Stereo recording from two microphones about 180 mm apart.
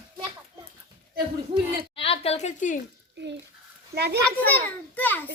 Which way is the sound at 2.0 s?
35° left (ahead or behind).